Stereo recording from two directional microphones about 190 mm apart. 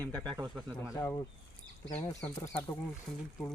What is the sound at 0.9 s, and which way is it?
Speech, 20° left (ahead or behind).